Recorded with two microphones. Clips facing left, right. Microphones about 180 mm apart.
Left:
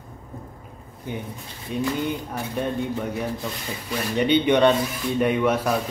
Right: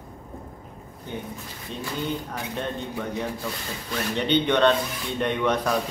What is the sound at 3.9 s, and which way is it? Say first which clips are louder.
Speech: left 3 dB; 10° left (ahead or behind).